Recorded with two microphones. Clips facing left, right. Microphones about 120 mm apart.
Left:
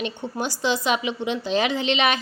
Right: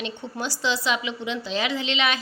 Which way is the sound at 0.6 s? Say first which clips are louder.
Left 3 dB; 50° left (ahead or behind).